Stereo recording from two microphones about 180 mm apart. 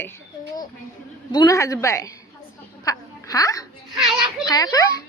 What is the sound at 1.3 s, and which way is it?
Speech, 20° left (ahead or behind).